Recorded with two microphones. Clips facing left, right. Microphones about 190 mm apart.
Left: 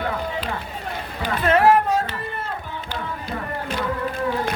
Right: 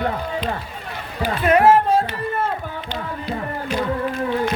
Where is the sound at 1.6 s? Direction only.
25° right (ahead or behind).